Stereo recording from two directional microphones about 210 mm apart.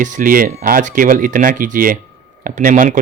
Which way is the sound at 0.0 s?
40° right (ahead or behind).